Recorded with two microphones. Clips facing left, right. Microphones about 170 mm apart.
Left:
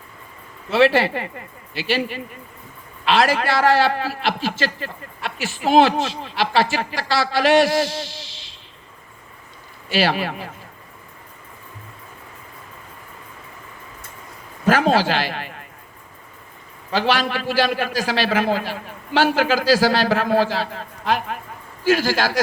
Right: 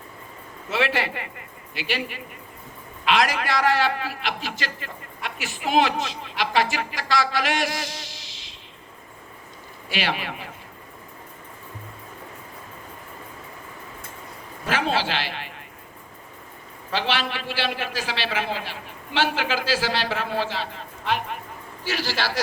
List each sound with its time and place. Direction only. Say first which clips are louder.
0.7 s a man's voice: left 8 dB; 30° left (ahead or behind)
9.9 s a man's voice: left 7 dB; 35° left (ahead or behind)
14.7 s a man's voice: left 7 dB; 45° left (ahead or behind)
16.9 s a man's voice: left 6 dB; 45° left (ahead or behind)